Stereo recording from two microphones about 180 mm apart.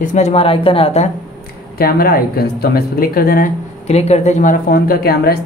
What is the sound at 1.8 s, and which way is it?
Speech, 55° left (ahead or behind).